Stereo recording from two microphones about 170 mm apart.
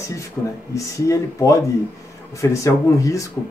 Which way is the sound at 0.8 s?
20° left (ahead or behind).